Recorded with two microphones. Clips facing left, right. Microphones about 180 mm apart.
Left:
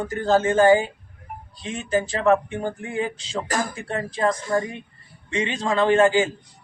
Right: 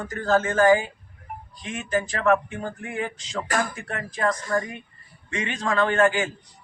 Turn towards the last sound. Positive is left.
turn(degrees=25)  # may be behind; listen again after turning